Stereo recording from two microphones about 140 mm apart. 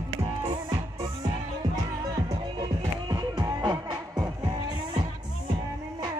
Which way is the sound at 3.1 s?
30° right (ahead or behind).